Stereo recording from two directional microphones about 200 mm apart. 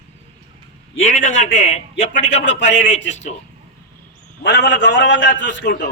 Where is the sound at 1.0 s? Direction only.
35° left (ahead or behind).